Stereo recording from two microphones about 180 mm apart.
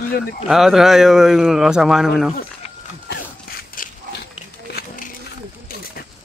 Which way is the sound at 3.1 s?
55° left (ahead or behind).